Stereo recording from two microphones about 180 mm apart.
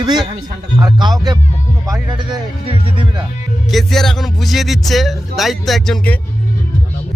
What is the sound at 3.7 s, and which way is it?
Speech, centre (ahead or behind).